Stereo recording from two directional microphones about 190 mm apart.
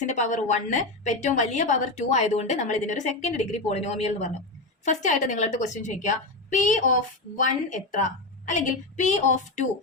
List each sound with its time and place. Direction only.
0.0 s a woman's voice: 40° left (ahead or behind)